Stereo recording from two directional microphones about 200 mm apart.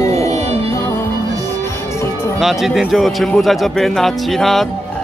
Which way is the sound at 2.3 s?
Centre (ahead or behind).